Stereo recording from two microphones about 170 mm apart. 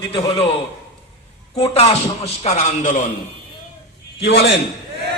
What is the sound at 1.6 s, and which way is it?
Speech, 35° left (ahead or behind).